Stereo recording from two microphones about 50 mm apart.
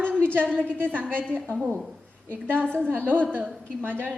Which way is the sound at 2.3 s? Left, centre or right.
Right.